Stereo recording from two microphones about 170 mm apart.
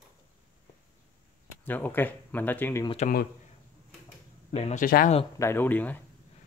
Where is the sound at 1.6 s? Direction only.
10° left (ahead or behind).